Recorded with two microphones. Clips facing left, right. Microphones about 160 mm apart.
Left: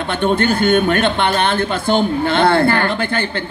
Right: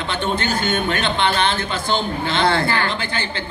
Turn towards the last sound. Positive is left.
turn(degrees=55)  # may be behind; listen again after turning